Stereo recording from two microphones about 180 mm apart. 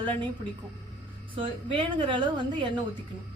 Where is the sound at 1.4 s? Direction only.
30° right (ahead or behind).